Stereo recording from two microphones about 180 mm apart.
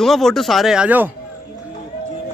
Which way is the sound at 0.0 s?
Centre (ahead or behind).